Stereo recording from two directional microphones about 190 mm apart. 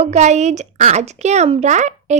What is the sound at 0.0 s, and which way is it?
A woman's voice, 35° right (ahead or behind).